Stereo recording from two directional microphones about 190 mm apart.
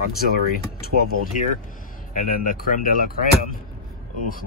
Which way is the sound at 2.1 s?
45° left (ahead or behind).